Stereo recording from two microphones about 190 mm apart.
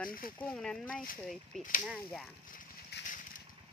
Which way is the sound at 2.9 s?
60° left (ahead or behind).